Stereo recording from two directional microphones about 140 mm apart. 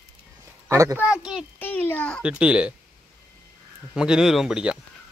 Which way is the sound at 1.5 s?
15° left (ahead or behind).